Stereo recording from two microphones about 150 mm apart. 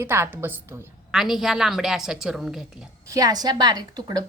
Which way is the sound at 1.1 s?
Centre (ahead or behind).